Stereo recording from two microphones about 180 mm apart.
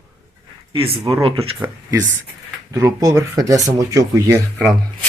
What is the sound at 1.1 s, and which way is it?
Speech, 30° right (ahead or behind).